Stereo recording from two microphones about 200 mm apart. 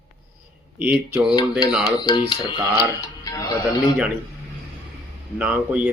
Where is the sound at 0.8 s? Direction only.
10° right (ahead or behind).